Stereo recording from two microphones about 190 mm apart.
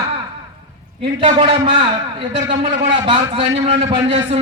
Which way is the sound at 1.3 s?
30° right (ahead or behind).